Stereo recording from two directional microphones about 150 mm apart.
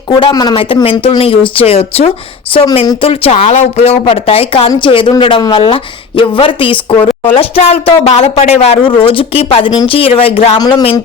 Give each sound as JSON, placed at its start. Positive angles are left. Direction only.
{"t": 0.1, "sound": "speech", "side_deg": 30}
{"t": 10.6, "sound": "speech", "side_deg": 25}